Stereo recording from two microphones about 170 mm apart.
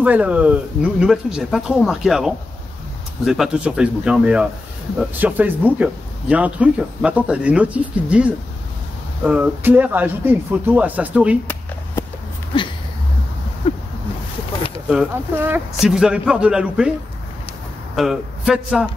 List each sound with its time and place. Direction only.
0.0 s speech: 10° right (ahead or behind)
13.6 s a sound: 35° left (ahead or behind)
14.9 s speech: 10° right (ahead or behind)
17.9 s speech: centre (ahead or behind)